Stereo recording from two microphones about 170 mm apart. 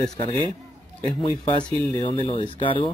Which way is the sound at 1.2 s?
30° left (ahead or behind).